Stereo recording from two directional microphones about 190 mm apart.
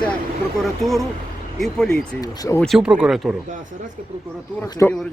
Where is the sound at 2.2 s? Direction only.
15° left (ahead or behind).